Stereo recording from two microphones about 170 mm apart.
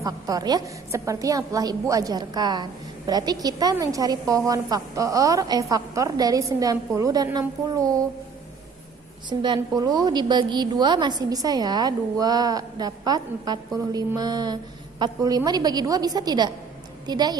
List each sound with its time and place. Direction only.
0.0 s a woman's voice: 20° right (ahead or behind)
9.4 s a woman's voice: 25° right (ahead or behind)